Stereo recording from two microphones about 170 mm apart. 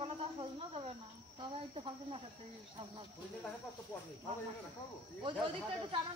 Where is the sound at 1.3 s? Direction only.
35° right (ahead or behind).